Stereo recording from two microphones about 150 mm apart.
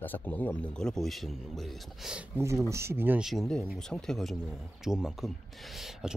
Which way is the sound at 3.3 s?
Centre (ahead or behind).